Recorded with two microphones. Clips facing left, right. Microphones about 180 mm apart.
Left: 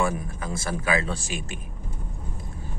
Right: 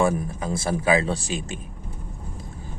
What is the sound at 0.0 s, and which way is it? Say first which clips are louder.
Speech: right 4 dB; 30° right (ahead or behind).